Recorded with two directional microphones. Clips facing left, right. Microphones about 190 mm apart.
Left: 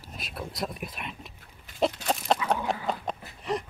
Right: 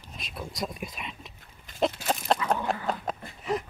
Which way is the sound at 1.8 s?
Centre (ahead or behind).